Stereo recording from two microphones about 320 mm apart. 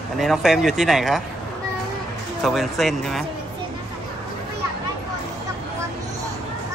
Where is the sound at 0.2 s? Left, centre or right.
Centre.